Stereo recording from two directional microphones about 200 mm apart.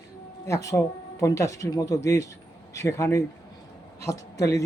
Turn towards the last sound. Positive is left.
turn(degrees=15)  # may be behind; listen again after turning